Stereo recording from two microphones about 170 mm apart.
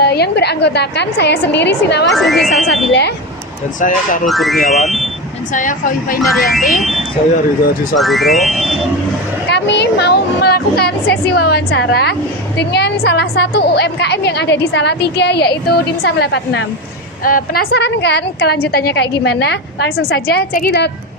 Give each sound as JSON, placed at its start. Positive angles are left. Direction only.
{"t": 0.0, "sound": "a woman's voice", "side_deg": 70}
{"t": 2.0, "sound": "speech", "side_deg": 0}
{"t": 3.8, "sound": "speech", "side_deg": 50}
{"t": 4.3, "sound": "speech", "side_deg": 0}
{"t": 5.5, "sound": "speech", "side_deg": 50}
{"t": 6.2, "sound": "speech", "side_deg": 0}
{"t": 6.6, "sound": "speech", "side_deg": 55}
{"t": 7.9, "sound": "speech", "side_deg": 0}
{"t": 9.5, "sound": "a woman's voice", "side_deg": 90}
{"t": 17.2, "sound": "a woman's voice", "side_deg": 55}